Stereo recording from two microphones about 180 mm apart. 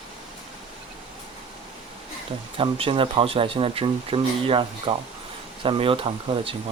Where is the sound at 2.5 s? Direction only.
30° right (ahead or behind).